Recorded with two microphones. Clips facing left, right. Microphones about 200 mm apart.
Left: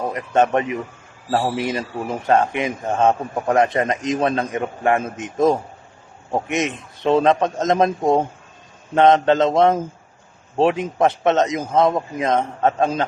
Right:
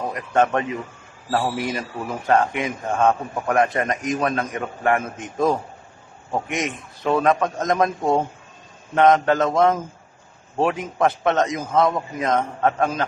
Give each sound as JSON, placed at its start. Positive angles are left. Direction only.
{"t": 0.1, "sound": "a man's voice", "side_deg": 20}